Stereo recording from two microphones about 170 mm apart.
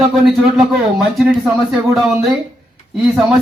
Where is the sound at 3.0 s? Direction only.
Centre (ahead or behind).